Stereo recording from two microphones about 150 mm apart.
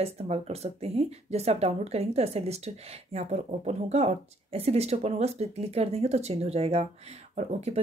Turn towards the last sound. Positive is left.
turn(degrees=-45)  # may be behind; listen again after turning